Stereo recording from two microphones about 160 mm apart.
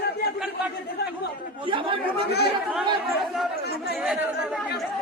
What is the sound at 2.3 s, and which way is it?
Speech, 90° left.